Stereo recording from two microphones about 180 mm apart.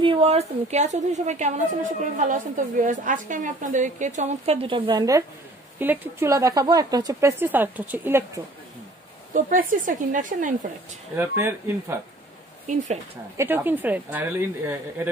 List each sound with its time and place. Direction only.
0.0 s a woman's voice: 30° right (ahead or behind); by 8.3 s 10° right (ahead or behind)
9.3 s a woman's voice: 50° right (ahead or behind)
11.1 s speech: 15° right (ahead or behind)
12.6 s a woman's voice: 40° right (ahead or behind)
13.4 s speech: 10° right (ahead or behind)